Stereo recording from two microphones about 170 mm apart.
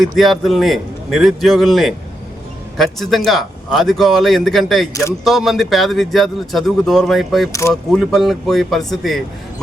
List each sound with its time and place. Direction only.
0.0 s speech: centre (ahead or behind)